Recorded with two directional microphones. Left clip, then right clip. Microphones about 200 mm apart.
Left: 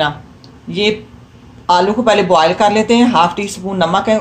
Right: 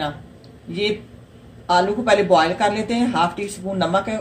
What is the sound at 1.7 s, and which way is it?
Speech, 35° left (ahead or behind).